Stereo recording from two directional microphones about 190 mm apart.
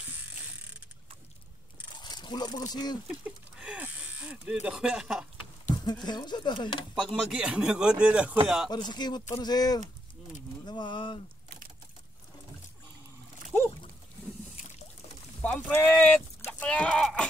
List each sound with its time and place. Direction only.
2.0 s speech: 25° left (ahead or behind)
3.3 s a sound: 5° right (ahead or behind)
5.9 s speech: 20° left (ahead or behind)
7.0 s a man's voice: centre (ahead or behind)
8.6 s speech: 20° left (ahead or behind)
10.6 s pigeon: 25° left (ahead or behind)
13.5 s dog: 10° left (ahead or behind)
15.4 s a man's voice: 10° left (ahead or behind)